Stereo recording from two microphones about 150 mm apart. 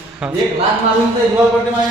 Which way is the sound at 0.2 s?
5° right (ahead or behind).